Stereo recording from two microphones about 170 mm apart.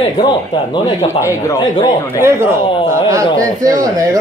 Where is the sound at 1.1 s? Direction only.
15° left (ahead or behind).